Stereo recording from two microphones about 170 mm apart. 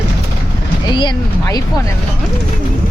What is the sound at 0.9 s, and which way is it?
Speech, 25° left (ahead or behind).